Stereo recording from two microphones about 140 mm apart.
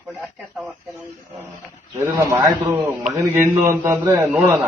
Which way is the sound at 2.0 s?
20° right (ahead or behind).